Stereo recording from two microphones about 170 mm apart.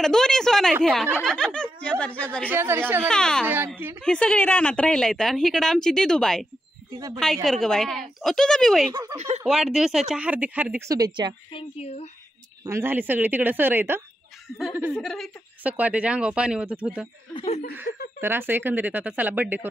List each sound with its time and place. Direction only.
0.0 s speech: 5° left (ahead or behind)
2.5 s speech: 15° right (ahead or behind)
3.1 s speech: 5° left (ahead or behind)
3.4 s speech: 10° right (ahead or behind)
4.0 s speech: 5° left (ahead or behind)
7.4 s speech: 5° left (ahead or behind)
8.9 s speech: 20° right (ahead or behind)
9.5 s speech: centre (ahead or behind)
10.9 s speech: 25° right (ahead or behind)
11.5 s speech: 35° left (ahead or behind)
12.6 s speech: 15° right (ahead or behind)
15.0 s speech: centre (ahead or behind)
18.2 s speech: 15° right (ahead or behind)